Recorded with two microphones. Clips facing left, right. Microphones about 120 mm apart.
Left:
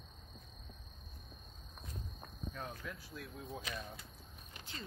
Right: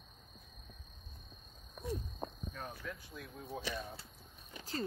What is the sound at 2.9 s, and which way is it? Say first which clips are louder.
Speech: right 2 dB; 5° left (ahead or behind).